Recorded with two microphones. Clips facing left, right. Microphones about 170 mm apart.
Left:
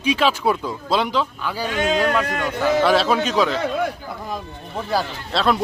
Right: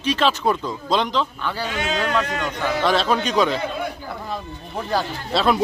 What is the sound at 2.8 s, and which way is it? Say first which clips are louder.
Speech: even; 5° left (ahead or behind).